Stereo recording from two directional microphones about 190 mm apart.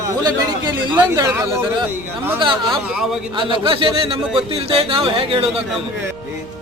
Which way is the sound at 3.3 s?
25° right (ahead or behind).